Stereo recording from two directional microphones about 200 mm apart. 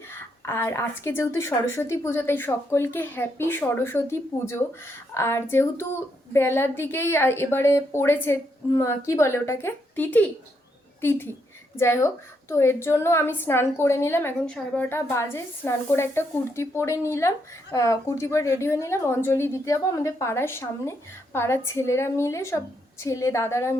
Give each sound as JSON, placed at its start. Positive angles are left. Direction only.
{"t": 0.1, "sound": "a woman's voice", "side_deg": 10}
{"t": 11.8, "sound": "a woman's voice", "side_deg": 15}